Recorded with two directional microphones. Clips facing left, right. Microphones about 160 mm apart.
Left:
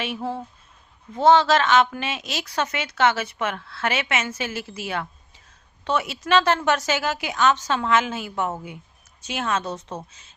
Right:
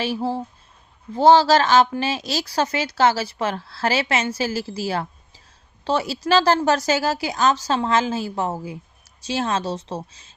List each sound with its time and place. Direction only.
0.0 s a woman's voice: 35° right (ahead or behind)